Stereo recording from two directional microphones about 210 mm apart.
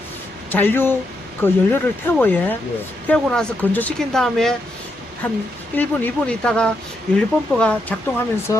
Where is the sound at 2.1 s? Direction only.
10° left (ahead or behind).